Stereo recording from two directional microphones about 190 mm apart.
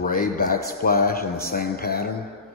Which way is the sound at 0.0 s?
45° left (ahead or behind).